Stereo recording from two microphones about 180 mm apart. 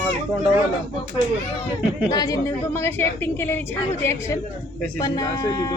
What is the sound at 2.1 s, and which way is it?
A woman's voice, 20° left (ahead or behind).